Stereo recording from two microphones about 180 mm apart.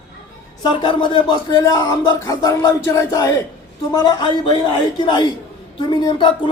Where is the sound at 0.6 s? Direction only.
25° left (ahead or behind).